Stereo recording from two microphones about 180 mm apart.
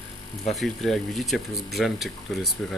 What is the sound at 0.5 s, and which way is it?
Speech, centre (ahead or behind).